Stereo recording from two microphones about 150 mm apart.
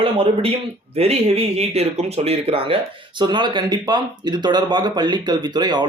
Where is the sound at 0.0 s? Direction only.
40° right (ahead or behind).